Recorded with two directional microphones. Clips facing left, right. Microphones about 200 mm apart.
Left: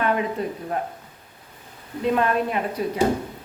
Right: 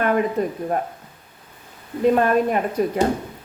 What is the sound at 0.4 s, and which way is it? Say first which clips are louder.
Speech: right 5 dB; 45° right (ahead or behind).